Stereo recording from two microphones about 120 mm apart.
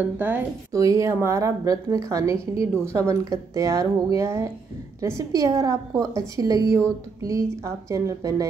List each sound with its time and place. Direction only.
0.0 s a woman's voice: 15° right (ahead or behind)
0.7 s a woman's voice: 25° right (ahead or behind)